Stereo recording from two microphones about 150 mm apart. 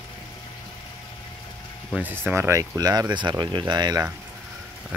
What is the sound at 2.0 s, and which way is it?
Speech, 10° right (ahead or behind).